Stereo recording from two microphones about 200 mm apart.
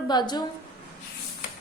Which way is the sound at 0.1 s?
20° left (ahead or behind).